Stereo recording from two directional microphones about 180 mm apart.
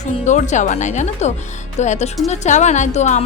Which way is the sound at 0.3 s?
40° left (ahead or behind).